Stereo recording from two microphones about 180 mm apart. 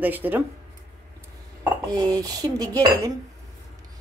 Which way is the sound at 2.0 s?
20° right (ahead or behind).